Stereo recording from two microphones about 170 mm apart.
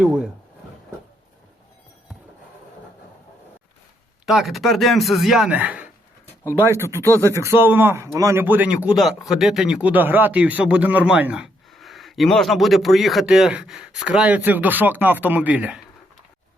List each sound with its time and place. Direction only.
4.3 s a man's voice: centre (ahead or behind)
6.4 s speech: 15° left (ahead or behind)
7.4 s a man's voice: 15° right (ahead or behind)